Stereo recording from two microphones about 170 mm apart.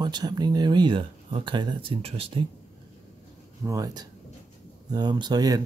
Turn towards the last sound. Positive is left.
turn(degrees=-20)  # may be behind; listen again after turning